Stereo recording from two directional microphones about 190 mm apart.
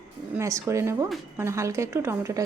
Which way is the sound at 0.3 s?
15° right (ahead or behind).